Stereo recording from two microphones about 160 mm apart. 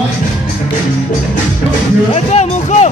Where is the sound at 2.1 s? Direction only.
45° left (ahead or behind).